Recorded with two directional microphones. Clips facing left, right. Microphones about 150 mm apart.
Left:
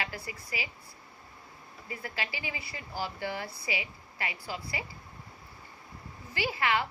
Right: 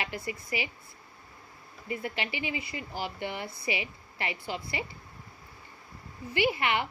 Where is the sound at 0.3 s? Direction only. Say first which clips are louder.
Right 5 dB; 25° right (ahead or behind).